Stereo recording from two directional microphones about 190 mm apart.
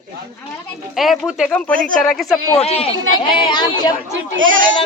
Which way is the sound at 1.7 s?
45° right (ahead or behind).